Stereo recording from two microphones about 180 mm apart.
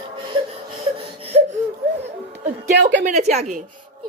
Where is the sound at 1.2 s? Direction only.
35° right (ahead or behind).